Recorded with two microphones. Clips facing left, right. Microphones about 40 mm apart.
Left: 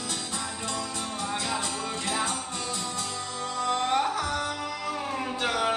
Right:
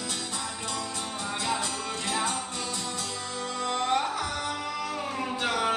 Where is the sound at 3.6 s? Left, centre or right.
Centre.